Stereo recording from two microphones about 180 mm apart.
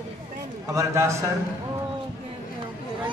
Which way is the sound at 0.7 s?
15° right (ahead or behind).